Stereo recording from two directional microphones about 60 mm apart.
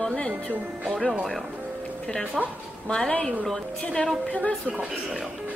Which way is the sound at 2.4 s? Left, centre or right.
Centre.